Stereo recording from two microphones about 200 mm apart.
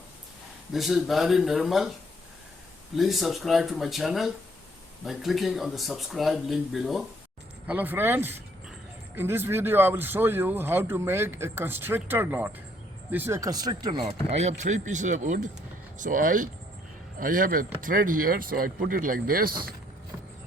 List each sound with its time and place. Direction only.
0.7 s speech: centre (ahead or behind)
2.9 s speech: centre (ahead or behind); by 14.1 s 20° right (ahead or behind)
14.3 s speech: 35° right (ahead or behind)